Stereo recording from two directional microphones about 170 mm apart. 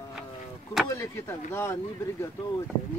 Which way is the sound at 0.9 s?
15° left (ahead or behind).